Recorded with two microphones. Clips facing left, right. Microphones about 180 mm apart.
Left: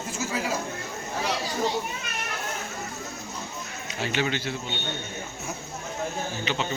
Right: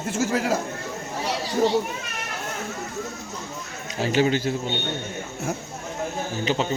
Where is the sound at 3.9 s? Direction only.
40° right (ahead or behind).